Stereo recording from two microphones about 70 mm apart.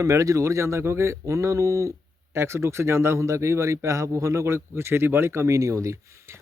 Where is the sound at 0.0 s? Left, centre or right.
Right.